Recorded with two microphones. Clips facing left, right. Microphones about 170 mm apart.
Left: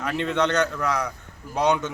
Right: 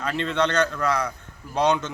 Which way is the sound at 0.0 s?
15° left (ahead or behind).